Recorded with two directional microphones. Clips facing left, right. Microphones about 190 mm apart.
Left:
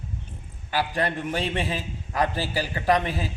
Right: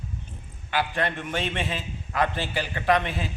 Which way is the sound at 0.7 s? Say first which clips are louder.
Left 1 dB; 35° left (ahead or behind).